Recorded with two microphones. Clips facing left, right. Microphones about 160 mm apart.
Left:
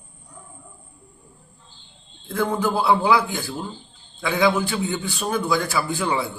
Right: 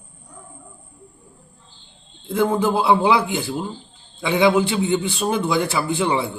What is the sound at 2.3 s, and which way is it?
A man's voice, 25° right (ahead or behind).